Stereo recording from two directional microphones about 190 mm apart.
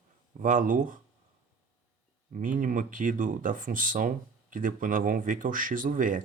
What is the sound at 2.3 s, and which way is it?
Speech, 45° right (ahead or behind).